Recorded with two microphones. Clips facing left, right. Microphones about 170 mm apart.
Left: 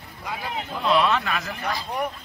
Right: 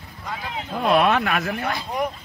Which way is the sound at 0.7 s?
50° right (ahead or behind).